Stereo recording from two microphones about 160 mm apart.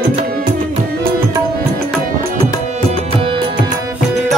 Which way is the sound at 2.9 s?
35° right (ahead or behind).